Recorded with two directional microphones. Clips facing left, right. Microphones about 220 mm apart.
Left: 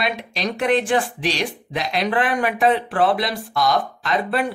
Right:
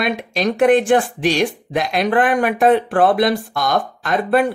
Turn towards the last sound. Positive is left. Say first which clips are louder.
# right 5 dB
turn(degrees=-50)  # may be behind; listen again after turning